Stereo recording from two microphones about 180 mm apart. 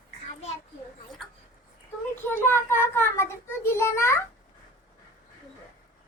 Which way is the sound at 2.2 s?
10° left (ahead or behind).